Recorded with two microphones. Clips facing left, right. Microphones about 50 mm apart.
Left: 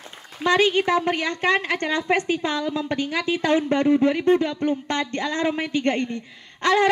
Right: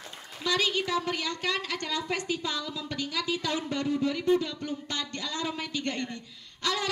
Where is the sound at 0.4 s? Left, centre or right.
Left.